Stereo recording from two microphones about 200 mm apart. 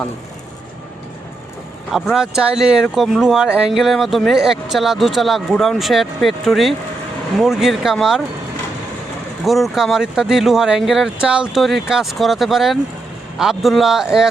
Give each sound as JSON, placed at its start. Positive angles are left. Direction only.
{"t": 1.9, "sound": "speech", "side_deg": 0}
{"t": 9.4, "sound": "speech", "side_deg": 0}